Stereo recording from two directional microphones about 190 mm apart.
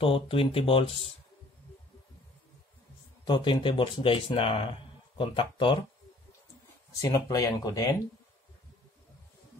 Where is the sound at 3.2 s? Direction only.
25° left (ahead or behind).